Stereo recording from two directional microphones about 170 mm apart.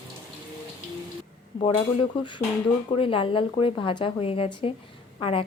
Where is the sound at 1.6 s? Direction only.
35° left (ahead or behind).